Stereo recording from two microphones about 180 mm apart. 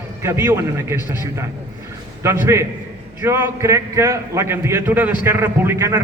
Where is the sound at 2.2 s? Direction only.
15° right (ahead or behind).